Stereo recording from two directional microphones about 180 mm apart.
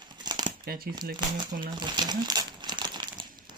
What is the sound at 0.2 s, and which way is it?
Shuffling cards, 25° right (ahead or behind).